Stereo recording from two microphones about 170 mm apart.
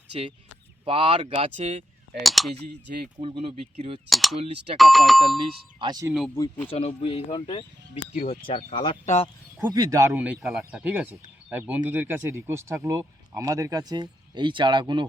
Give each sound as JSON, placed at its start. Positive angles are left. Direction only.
{"t": 0.1, "sound": "speech", "side_deg": -35}
{"t": 2.2, "sound": "speech", "side_deg": 0}
{"t": 3.2, "sound": "speech", "side_deg": -35}
{"t": 4.1, "sound": "speech", "side_deg": 0}
{"t": 4.4, "sound": "speech", "side_deg": -35}
{"t": 4.8, "sound": "speech", "side_deg": 0}
{"t": 5.8, "sound": "speech", "side_deg": -25}
{"t": 6.3, "sound": "speech", "side_deg": 15}
{"t": 6.7, "sound": "speech", "side_deg": 35}
{"t": 9.6, "sound": "speech", "side_deg": -20}
{"t": 10.1, "sound": "speech", "side_deg": -5}